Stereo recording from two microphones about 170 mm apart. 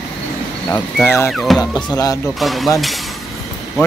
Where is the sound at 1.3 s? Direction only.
Centre (ahead or behind).